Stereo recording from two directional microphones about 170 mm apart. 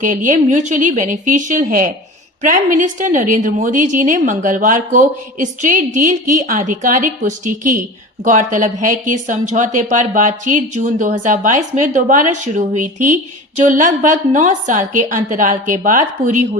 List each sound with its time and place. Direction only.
0.0 s a woman's voice: 50° right (ahead or behind)